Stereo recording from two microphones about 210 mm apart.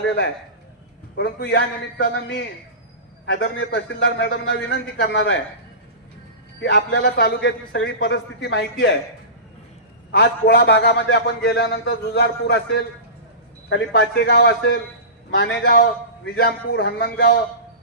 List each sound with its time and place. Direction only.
1.1 s a man's voice: 55° left (ahead or behind)
6.6 s a man's voice: 55° left (ahead or behind)
10.1 s a man's voice: 50° left (ahead or behind)